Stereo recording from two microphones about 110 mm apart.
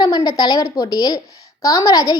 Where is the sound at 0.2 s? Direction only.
35° left (ahead or behind).